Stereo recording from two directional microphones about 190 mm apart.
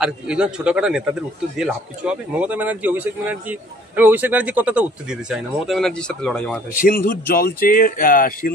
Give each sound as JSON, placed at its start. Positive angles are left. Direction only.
{"t": 0.0, "sound": "a man's voice", "side_deg": -5}
{"t": 6.8, "sound": "speech", "side_deg": 50}